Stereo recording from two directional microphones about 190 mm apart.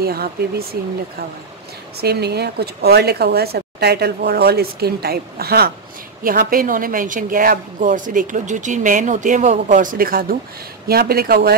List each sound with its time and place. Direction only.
0.0 s speech: 55° right (ahead or behind)
2.0 s a woman's voice: 60° right (ahead or behind)